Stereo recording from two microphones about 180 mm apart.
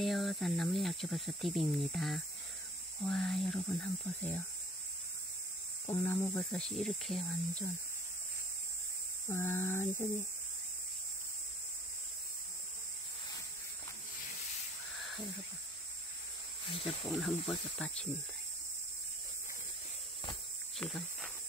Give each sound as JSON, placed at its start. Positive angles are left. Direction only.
{"t": 0.0, "sound": "speech", "side_deg": 0}
{"t": 5.9, "sound": "a sound", "side_deg": 15}
{"t": 6.5, "sound": "speech", "side_deg": 0}
{"t": 9.3, "sound": "a sound", "side_deg": 15}
{"t": 16.8, "sound": "speech", "side_deg": 0}
{"t": 20.7, "sound": "speech", "side_deg": 5}